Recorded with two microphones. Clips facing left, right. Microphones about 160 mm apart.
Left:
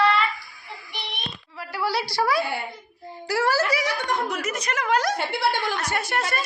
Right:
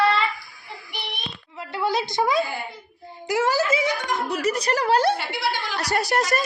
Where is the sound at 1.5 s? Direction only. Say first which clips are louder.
Right 2 dB; 20° right (ahead or behind).